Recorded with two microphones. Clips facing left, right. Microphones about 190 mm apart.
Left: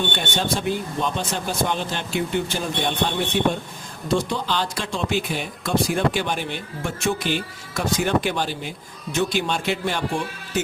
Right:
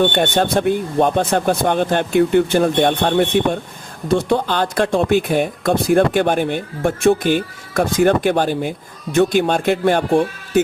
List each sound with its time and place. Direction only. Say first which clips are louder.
0.0 s speech: right 9 dB; 55° right (ahead or behind)